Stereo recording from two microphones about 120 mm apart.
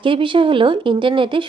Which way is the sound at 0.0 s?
45° right (ahead or behind).